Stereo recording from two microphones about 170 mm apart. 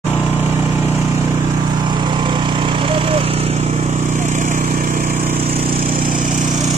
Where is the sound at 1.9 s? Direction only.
25° right (ahead or behind); by 5.3 s 55° right (ahead or behind).